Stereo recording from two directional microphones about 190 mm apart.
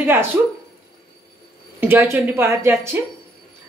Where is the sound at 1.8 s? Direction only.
10° right (ahead or behind).